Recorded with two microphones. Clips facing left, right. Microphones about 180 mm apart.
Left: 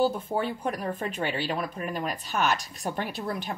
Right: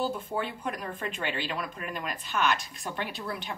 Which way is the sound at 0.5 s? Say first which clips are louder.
Left 5 dB; 40° left (ahead or behind).